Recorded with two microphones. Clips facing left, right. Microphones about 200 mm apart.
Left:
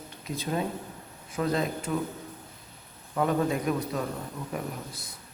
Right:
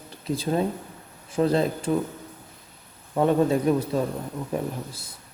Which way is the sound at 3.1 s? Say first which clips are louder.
Right 6 dB; 30° right (ahead or behind).